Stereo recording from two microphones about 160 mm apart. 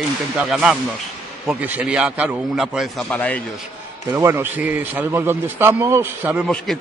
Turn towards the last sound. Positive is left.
turn(degrees=-15)  # may be behind; listen again after turning